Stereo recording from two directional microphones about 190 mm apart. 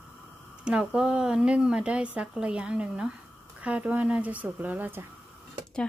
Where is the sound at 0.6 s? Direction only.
5° right (ahead or behind).